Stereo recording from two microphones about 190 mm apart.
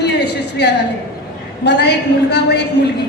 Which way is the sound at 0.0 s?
60° left (ahead or behind).